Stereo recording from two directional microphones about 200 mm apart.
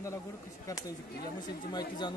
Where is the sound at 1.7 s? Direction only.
20° left (ahead or behind).